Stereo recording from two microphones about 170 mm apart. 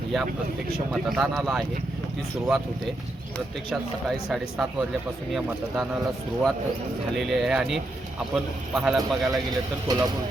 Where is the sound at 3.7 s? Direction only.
Centre (ahead or behind).